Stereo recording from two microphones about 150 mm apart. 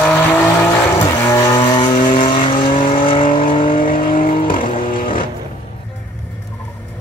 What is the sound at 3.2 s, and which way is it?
Vehicle, 65° left (ahead or behind).